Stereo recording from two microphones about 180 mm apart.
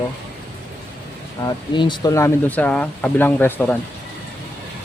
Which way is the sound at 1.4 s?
25° left (ahead or behind).